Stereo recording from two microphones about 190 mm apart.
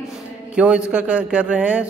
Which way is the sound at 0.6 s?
5° right (ahead or behind).